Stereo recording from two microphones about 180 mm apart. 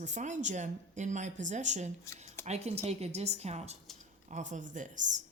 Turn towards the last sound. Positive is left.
turn(degrees=-45)  # may be behind; listen again after turning